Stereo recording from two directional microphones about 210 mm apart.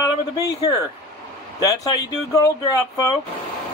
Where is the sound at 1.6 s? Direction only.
15° left (ahead or behind).